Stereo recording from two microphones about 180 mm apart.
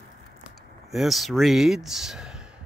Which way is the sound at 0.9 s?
Centre (ahead or behind).